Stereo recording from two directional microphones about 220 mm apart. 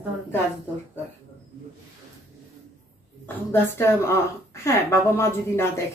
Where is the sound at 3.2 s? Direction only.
10° left (ahead or behind).